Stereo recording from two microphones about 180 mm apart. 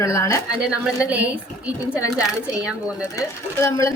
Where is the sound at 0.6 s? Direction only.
5° right (ahead or behind).